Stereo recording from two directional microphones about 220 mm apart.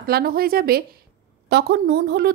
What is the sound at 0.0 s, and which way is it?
A woman's voice, 45° right (ahead or behind).